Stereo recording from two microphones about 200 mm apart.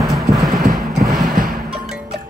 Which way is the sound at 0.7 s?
45° right (ahead or behind).